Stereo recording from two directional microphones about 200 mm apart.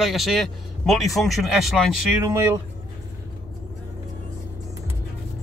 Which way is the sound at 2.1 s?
15° right (ahead or behind).